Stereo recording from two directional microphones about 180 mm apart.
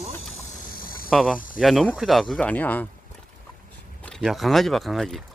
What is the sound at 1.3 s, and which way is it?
Speech, 50° left (ahead or behind).